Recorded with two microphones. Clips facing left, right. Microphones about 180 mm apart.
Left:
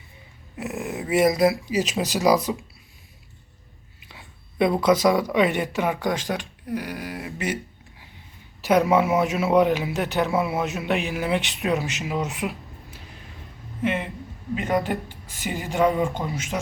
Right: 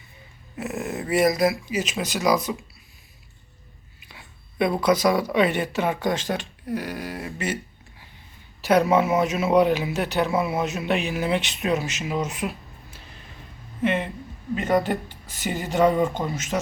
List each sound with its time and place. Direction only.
0.5 s speech: 15° left (ahead or behind); by 2.6 s 30° left (ahead or behind)
4.1 s speech: 20° left (ahead or behind)
8.6 s speech: 15° left (ahead or behind)
12.2 s a sound: 20° left (ahead or behind)
13.8 s speech: 10° left (ahead or behind)